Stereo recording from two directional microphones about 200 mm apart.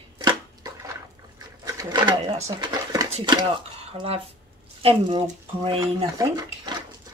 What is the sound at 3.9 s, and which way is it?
Speech, 30° right (ahead or behind).